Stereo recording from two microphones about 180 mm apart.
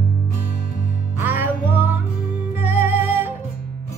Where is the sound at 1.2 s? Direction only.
10° right (ahead or behind).